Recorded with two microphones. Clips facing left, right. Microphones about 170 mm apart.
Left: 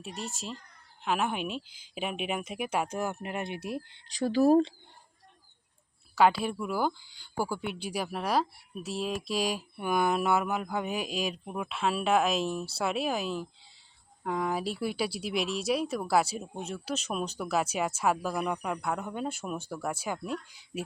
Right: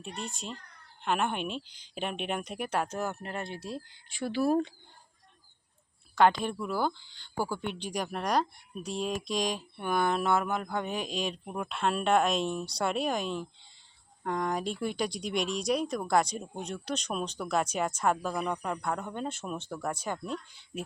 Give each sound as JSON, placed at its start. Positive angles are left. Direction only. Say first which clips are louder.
{"t": 0.2, "sound": "speech", "louder": "left 2 dB", "side_deg": 0}
{"t": 4.2, "sound": "speech", "louder": "left 5 dB", "side_deg": 40}
{"t": 6.1, "sound": "speech", "louder": "even", "side_deg": 5}